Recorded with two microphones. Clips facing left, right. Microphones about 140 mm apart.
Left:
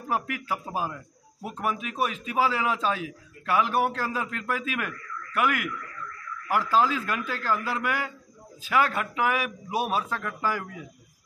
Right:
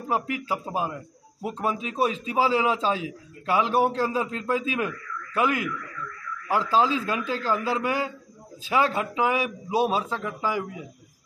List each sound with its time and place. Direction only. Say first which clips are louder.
0.1 s a man's voice: right 2 dB; 25° right (ahead or behind)